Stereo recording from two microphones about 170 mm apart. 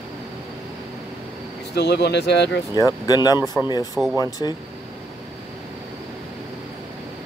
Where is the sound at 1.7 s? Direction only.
80° left.